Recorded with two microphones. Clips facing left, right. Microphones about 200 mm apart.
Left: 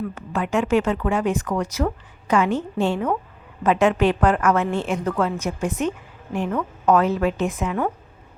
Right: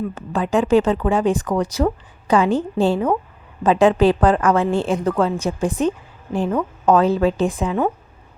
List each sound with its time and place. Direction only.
0.1 s speech: 30° right (ahead or behind)